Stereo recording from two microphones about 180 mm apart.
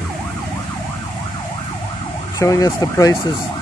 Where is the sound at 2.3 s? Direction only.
20° left (ahead or behind).